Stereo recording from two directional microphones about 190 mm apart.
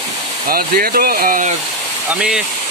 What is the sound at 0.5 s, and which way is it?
Speech, 50° right (ahead or behind).